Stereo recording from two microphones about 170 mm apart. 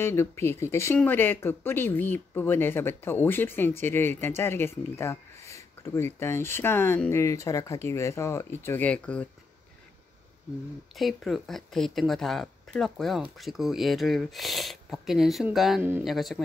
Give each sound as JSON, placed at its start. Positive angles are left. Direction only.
{"t": 0.0, "sound": "speech", "side_deg": 15}
{"t": 11.0, "sound": "speech", "side_deg": 0}